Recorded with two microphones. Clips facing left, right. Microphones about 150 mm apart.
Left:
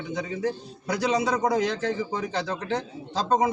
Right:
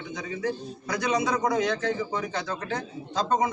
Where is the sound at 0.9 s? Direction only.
30° left (ahead or behind).